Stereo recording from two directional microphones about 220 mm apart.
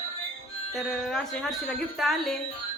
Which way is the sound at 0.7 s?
Centre (ahead or behind).